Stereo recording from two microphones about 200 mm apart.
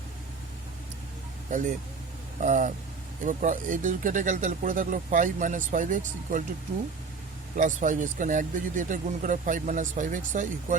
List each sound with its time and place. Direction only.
1.5 s speech: 40° right (ahead or behind)
7.5 s speech: 40° right (ahead or behind)